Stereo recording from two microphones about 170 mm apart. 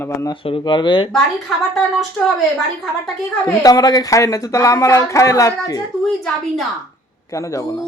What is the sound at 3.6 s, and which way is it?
Speech, 20° left (ahead or behind).